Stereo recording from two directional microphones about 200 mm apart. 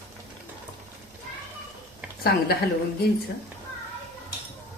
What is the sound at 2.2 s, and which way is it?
Speech, 50° left (ahead or behind).